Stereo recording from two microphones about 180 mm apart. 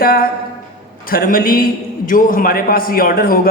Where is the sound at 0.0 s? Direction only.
55° left (ahead or behind).